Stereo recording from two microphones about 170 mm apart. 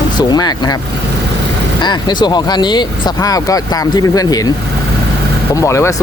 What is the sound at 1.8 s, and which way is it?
Speech, 25° left (ahead or behind).